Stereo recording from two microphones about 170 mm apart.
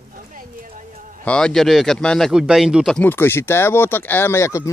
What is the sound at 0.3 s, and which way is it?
Speech, 55° right (ahead or behind).